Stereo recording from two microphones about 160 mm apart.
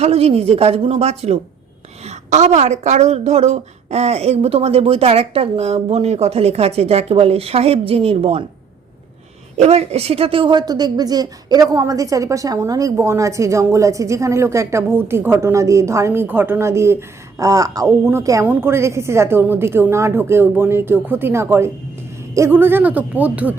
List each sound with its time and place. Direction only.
0.0 s a woman's voice: 40° right (ahead or behind)
9.6 s a woman's voice: 40° right (ahead or behind); by 23.6 s 10° right (ahead or behind)